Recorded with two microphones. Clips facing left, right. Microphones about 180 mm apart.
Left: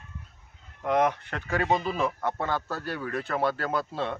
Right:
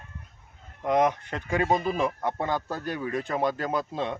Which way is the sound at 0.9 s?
10° right (ahead or behind).